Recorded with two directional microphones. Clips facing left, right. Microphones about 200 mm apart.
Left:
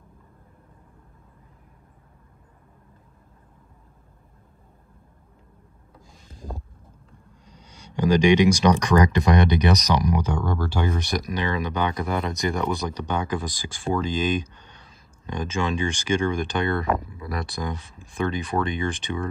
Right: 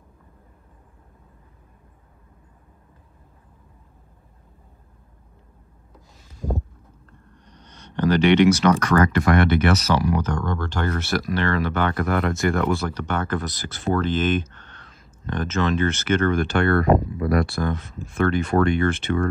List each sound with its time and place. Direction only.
7.6 s speech: 10° left (ahead or behind)